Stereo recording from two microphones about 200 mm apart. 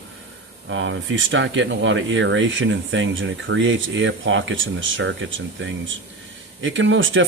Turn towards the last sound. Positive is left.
turn(degrees=-70)  # may be behind; listen again after turning